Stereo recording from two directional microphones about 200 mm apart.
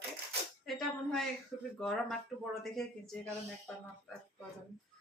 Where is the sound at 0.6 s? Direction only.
Centre (ahead or behind).